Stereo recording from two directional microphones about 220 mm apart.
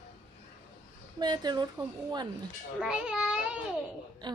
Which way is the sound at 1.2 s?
20° right (ahead or behind).